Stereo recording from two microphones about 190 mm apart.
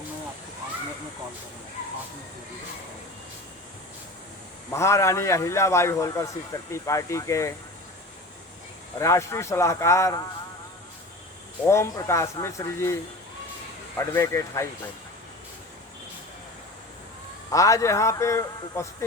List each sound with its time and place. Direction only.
4.7 s a man's voice: 15° left (ahead or behind)
9.0 s a man's voice: 15° left (ahead or behind)
11.6 s a man's voice: 15° left (ahead or behind)
14.0 s a man's voice: 15° left (ahead or behind)
17.5 s a man's voice: 15° left (ahead or behind)